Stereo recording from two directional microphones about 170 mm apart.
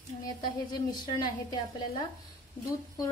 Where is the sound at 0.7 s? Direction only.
25° left (ahead or behind).